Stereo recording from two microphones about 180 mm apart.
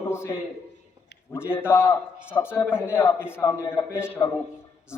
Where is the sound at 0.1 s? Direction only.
15° left (ahead or behind).